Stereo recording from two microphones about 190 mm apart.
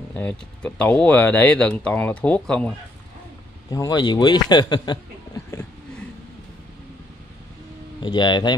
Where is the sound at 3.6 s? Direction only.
20° left (ahead or behind).